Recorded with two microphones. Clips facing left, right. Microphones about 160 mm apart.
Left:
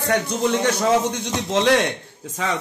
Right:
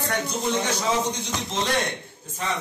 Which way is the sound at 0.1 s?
65° left (ahead or behind).